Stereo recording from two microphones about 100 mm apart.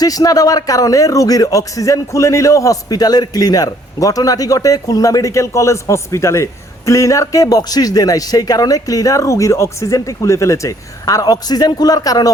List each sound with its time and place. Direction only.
0.0 s a man's voice: 40° left (ahead or behind)